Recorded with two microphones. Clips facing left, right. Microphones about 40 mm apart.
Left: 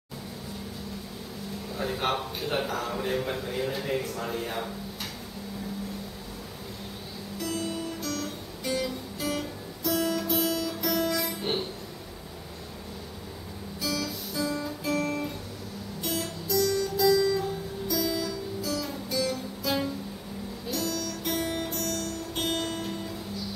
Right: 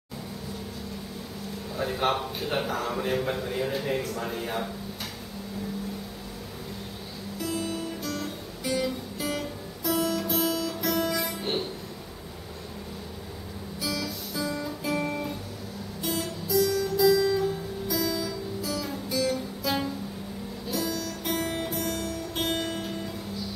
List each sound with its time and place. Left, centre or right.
1.8 s speech: centre
7.3 s music: centre
13.7 s music: centre
15.0 s guitar: centre
16.0 s guitar: centre
18.3 s music: centre